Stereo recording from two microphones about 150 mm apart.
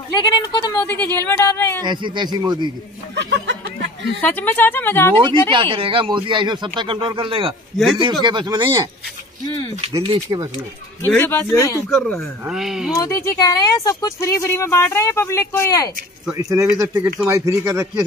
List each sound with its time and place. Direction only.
0.1 s speech: 25° left (ahead or behind)
0.7 s a woman's voice: 15° left (ahead or behind)
1.8 s speech: 30° right (ahead or behind)
4.2 s a woman's voice: 10° left (ahead or behind)
5.1 s speech: 30° right (ahead or behind)
7.7 s speech: centre (ahead or behind)
8.0 s speech: 30° right (ahead or behind)
10.0 s speech: 25° right (ahead or behind)
11.1 s a woman's voice: 15° left (ahead or behind)
11.9 s speech: 5° left (ahead or behind)
12.9 s speech: 25° left (ahead or behind)
16.3 s speech: 20° right (ahead or behind)